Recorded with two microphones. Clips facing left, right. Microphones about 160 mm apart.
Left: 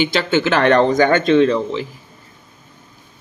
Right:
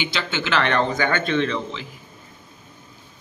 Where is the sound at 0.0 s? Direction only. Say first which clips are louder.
Left 10 dB; 45° left (ahead or behind).